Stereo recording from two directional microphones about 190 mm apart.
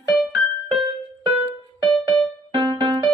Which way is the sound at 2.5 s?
25° right (ahead or behind).